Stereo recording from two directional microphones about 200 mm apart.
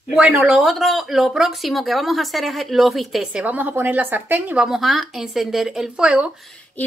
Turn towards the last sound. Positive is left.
turn(degrees=0)  # may be behind; listen again after turning